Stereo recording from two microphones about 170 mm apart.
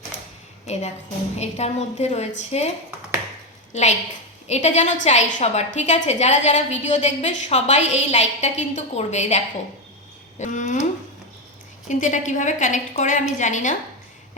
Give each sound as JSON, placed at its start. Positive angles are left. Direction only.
{"t": 0.6, "sound": "a sound", "side_deg": 40}
{"t": 1.4, "sound": "a woman's voice", "side_deg": 40}
{"t": 11.9, "sound": "a woman's voice", "side_deg": 45}